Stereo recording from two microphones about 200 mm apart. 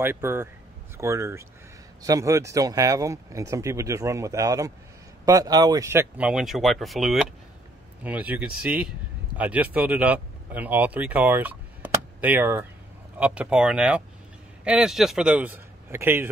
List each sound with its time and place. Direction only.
0.0 s a man's voice: 10° right (ahead or behind)